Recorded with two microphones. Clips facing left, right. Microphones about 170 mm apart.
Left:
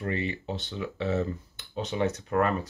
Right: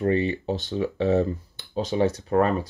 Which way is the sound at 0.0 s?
35° right (ahead or behind).